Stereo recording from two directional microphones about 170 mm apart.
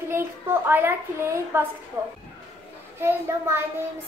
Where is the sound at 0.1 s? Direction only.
15° right (ahead or behind).